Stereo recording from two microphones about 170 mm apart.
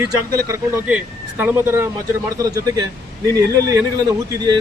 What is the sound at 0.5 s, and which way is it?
Speech, 10° right (ahead or behind).